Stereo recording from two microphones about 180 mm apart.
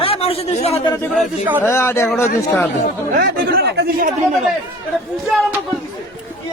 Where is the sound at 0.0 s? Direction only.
30° left (ahead or behind).